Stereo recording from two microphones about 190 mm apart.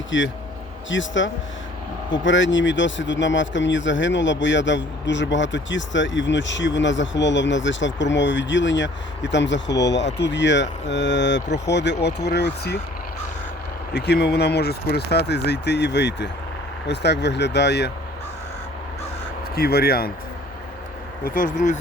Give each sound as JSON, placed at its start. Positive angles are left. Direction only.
{"t": 0.1, "sound": "speech", "side_deg": 80}
{"t": 13.9, "sound": "speech", "side_deg": 60}
{"t": 19.5, "sound": "speech", "side_deg": 55}
{"t": 21.2, "sound": "speech", "side_deg": 45}